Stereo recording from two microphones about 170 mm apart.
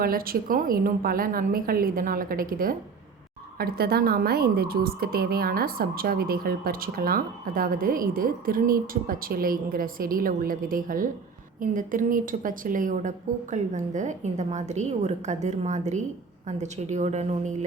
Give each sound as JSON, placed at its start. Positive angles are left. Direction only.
{"t": 0.0, "sound": "a woman's voice", "side_deg": -60}